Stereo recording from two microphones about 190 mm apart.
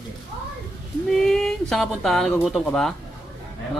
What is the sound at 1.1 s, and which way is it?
Speech, centre (ahead or behind).